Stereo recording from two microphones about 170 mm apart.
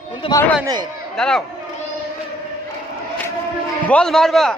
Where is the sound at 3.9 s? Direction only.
5° left (ahead or behind).